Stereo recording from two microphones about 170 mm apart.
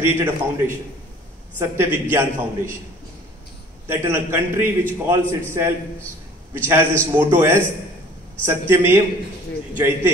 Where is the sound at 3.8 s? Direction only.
15° right (ahead or behind).